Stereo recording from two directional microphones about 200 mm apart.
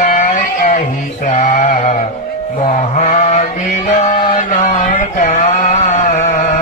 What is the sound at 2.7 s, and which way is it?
Sheep, 35° left (ahead or behind).